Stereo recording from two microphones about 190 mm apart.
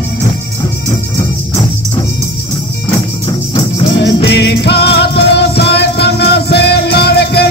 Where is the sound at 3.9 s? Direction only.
65° left (ahead or behind).